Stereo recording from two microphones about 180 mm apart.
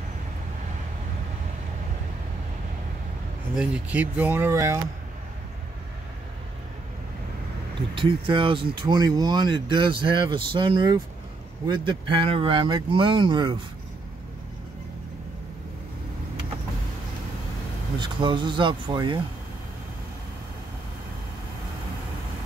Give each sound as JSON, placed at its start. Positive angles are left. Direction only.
{"t": 3.5, "sound": "speech", "side_deg": -5}
{"t": 7.9, "sound": "speech", "side_deg": -30}
{"t": 17.9, "sound": "speech", "side_deg": -25}